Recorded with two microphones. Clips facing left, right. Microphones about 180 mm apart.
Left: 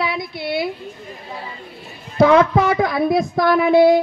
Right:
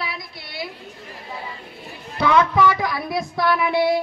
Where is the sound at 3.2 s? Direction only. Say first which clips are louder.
Left 1 dB; 45° left (ahead or behind).